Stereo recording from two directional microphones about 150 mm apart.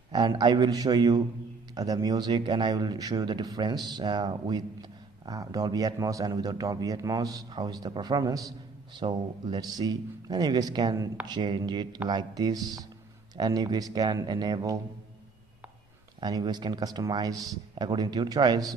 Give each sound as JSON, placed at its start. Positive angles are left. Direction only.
{"t": 0.1, "sound": "a man's voice", "side_deg": -30}
{"t": 16.2, "sound": "a man's voice", "side_deg": -25}